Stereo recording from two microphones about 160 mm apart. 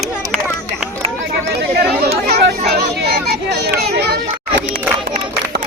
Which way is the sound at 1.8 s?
70° right (ahead or behind).